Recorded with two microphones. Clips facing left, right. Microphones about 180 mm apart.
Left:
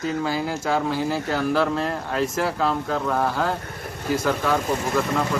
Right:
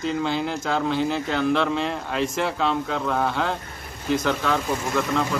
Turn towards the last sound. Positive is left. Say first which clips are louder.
# left 1 dB
turn(degrees=5)  # may be behind; listen again after turning